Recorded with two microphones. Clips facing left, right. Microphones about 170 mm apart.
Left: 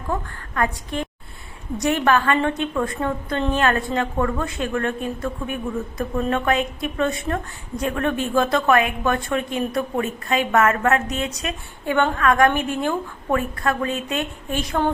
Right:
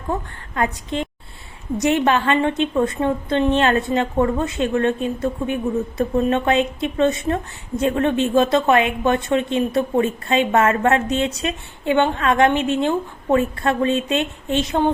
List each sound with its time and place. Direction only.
0.1 s a woman's voice: 20° right (ahead or behind)